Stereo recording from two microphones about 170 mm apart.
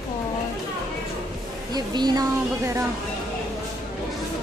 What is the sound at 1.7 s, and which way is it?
Speech, 25° right (ahead or behind).